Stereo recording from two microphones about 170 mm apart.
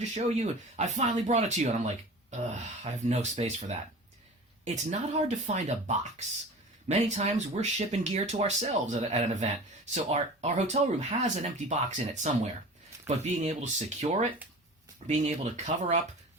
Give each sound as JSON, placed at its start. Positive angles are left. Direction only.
{"t": 0.0, "sound": "speech", "side_deg": -40}